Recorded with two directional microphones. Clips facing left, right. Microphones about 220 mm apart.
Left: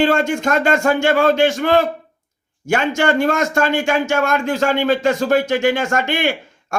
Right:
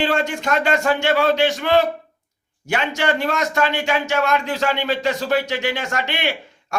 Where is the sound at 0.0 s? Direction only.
50° left (ahead or behind).